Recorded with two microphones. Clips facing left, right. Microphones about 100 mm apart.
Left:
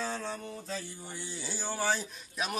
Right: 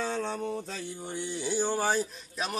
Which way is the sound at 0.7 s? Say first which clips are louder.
Right 2 dB; 60° right (ahead or behind).